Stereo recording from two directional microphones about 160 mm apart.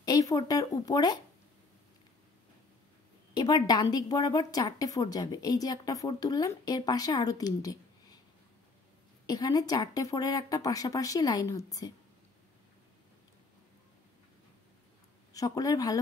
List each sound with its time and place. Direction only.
0.0 s a woman's voice: 25° left (ahead or behind)
3.3 s a woman's voice: 25° left (ahead or behind)
9.2 s a woman's voice: 25° left (ahead or behind)
15.3 s a woman's voice: 20° left (ahead or behind)